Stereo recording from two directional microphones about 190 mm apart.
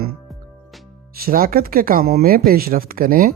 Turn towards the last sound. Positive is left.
turn(degrees=-50)  # may be behind; listen again after turning